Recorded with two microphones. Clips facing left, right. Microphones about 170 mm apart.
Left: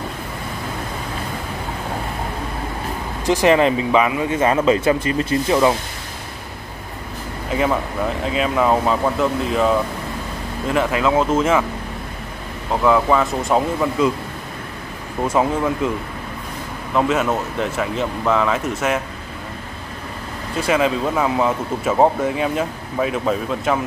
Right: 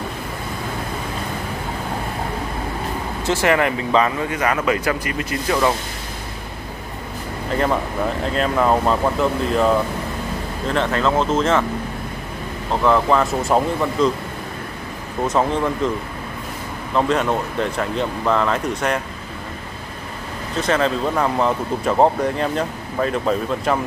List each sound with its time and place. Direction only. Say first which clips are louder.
3.3 s speech: left 4 dB; 15° left (ahead or behind)
7.5 s speech: even; 5° left (ahead or behind)
12.8 s speech: left 1 dB; 5° left (ahead or behind)
15.2 s speech: left 1 dB; 5° left (ahead or behind)
16.9 s speech: even; 5° left (ahead or behind)
20.6 s speech: left 1 dB; 10° left (ahead or behind)